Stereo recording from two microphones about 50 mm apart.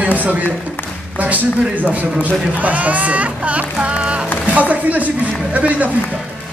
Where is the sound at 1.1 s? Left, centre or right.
Right.